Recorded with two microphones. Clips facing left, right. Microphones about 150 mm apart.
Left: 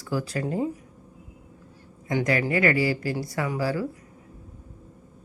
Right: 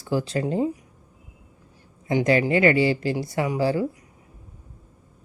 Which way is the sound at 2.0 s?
25° right (ahead or behind).